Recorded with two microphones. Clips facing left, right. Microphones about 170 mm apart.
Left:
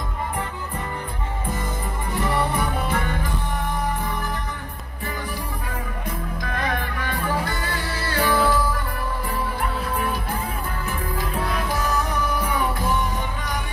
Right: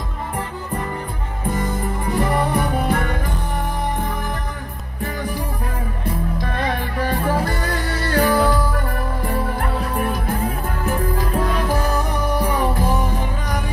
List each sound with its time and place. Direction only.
2.3 s music: 45° right (ahead or behind)
6.5 s music: 35° right (ahead or behind)